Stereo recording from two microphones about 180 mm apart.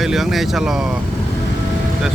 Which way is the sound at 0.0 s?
Centre (ahead or behind).